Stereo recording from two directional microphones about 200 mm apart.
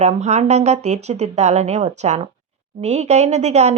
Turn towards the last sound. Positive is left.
turn(degrees=-35)  # may be behind; listen again after turning